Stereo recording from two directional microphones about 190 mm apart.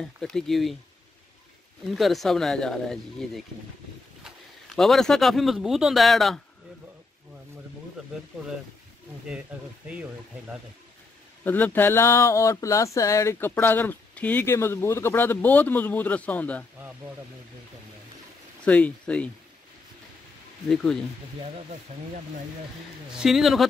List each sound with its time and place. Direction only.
0.0 s speech: 5° left (ahead or behind)
1.9 s speech: centre (ahead or behind)
4.7 s speech: centre (ahead or behind)
11.4 s speech: 10° left (ahead or behind)
18.7 s speech: 5° left (ahead or behind)
20.6 s speech: centre (ahead or behind)
21.9 s speech: 35° right (ahead or behind)
23.1 s speech: centre (ahead or behind)